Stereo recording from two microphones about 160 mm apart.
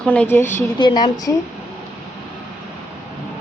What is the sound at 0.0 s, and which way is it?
Speech, 10° left (ahead or behind).